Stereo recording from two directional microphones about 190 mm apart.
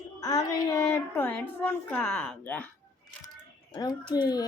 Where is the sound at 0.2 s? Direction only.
20° left (ahead or behind).